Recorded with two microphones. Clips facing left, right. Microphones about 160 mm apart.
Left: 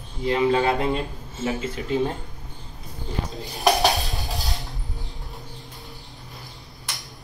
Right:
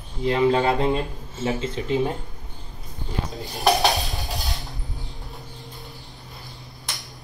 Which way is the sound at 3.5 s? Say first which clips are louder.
Even; centre (ahead or behind).